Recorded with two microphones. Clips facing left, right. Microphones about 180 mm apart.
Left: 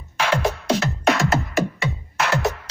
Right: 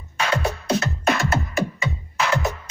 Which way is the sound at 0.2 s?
90° left.